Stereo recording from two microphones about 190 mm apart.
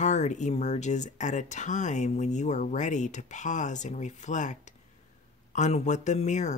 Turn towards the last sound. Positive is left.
turn(degrees=40)  # may be behind; listen again after turning